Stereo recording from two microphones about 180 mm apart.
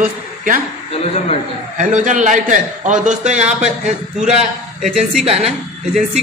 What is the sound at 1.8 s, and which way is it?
Speech, 45° right (ahead or behind).